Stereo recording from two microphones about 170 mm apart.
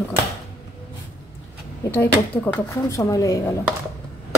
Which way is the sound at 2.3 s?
10° left (ahead or behind).